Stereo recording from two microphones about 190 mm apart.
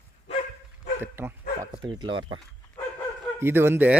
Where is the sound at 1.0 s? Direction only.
10° right (ahead or behind).